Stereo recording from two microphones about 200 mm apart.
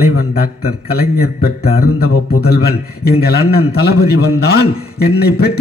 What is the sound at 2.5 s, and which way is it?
A man's voice, 50° left (ahead or behind).